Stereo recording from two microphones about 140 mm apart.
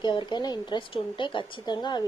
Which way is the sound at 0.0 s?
35° left (ahead or behind).